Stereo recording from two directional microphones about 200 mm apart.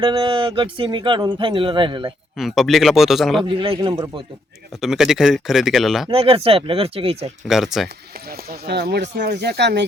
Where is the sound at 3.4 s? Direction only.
25° right (ahead or behind).